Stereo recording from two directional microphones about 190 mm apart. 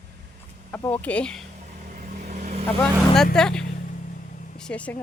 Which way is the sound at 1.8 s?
40° right (ahead or behind).